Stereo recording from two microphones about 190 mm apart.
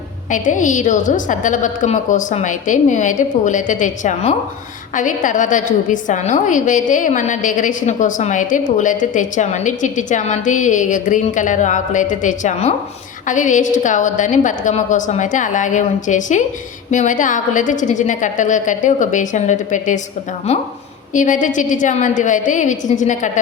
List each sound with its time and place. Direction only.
0.3 s a woman's voice: 40° left (ahead or behind)